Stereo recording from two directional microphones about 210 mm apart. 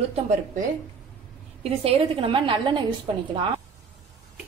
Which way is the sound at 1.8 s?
25° right (ahead or behind).